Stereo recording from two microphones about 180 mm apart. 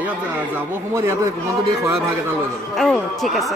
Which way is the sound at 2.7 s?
Centre (ahead or behind).